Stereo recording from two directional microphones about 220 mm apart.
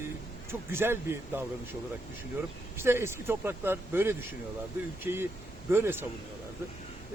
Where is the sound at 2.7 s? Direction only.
10° right (ahead or behind).